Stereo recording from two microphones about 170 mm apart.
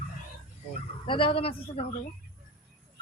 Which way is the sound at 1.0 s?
30° left (ahead or behind).